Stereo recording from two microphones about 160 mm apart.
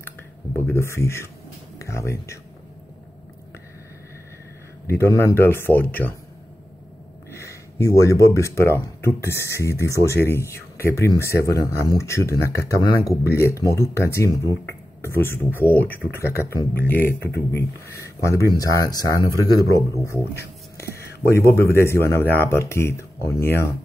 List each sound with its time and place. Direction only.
0.6 s speech: 15° left (ahead or behind)
4.8 s speech: 15° left (ahead or behind)
7.3 s speech: 20° left (ahead or behind)